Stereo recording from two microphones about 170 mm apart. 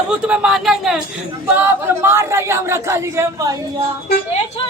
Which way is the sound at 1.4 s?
15° right (ahead or behind).